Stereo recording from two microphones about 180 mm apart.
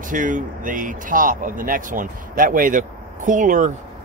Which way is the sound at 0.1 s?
45° right (ahead or behind).